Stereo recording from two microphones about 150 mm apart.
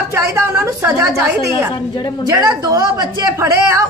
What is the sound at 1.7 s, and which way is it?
Speech, 30° left (ahead or behind).